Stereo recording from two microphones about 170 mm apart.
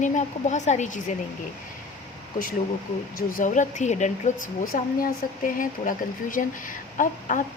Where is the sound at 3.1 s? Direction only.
55° left (ahead or behind).